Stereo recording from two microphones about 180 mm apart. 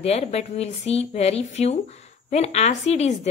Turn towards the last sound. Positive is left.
turn(degrees=40)  # may be behind; listen again after turning